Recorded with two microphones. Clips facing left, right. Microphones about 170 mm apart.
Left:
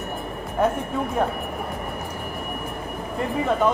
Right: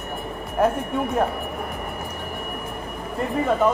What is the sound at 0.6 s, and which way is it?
Speech, 5° right (ahead or behind).